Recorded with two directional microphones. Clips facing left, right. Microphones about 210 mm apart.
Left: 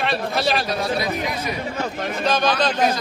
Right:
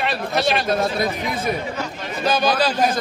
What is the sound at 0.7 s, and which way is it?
Speech, 50° right (ahead or behind).